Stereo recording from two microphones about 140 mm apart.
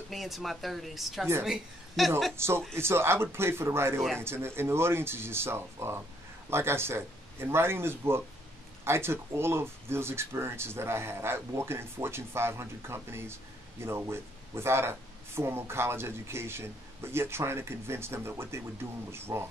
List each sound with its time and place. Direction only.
0.1 s speech: centre (ahead or behind)
2.3 s speech: 20° right (ahead or behind)